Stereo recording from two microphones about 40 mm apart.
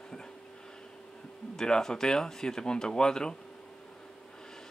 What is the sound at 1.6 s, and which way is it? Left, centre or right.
Speech, centre.